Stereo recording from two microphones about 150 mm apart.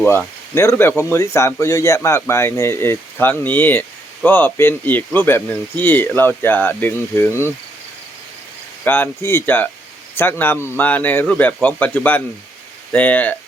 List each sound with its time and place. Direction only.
0.0 s speech: 15° left (ahead or behind)
8.8 s speech: 15° left (ahead or behind)